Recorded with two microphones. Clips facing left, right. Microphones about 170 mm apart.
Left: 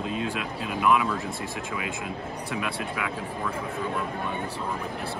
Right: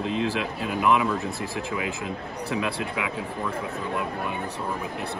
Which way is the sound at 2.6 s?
20° right (ahead or behind).